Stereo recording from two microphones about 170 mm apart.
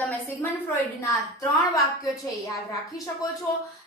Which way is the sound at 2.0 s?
20° left (ahead or behind).